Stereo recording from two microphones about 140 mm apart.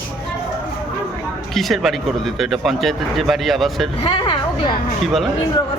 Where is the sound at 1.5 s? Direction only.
Centre (ahead or behind).